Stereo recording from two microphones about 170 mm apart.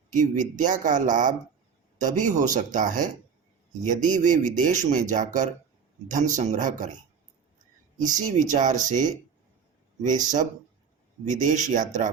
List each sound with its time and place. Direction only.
0.1 s speech: 50° right (ahead or behind)
8.0 s speech: 45° right (ahead or behind)